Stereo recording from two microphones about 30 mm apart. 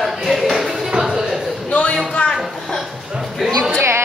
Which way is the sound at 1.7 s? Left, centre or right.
Left.